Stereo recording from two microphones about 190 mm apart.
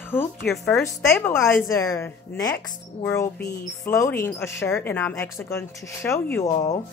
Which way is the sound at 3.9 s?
15° left (ahead or behind).